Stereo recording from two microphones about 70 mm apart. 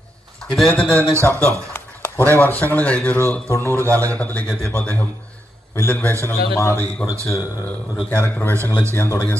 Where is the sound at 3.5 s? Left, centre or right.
Left.